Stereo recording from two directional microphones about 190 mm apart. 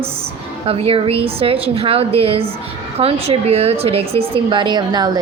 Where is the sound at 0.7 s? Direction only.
30° right (ahead or behind).